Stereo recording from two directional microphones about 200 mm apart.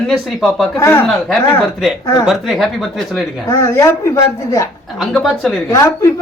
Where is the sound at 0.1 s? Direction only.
Centre (ahead or behind).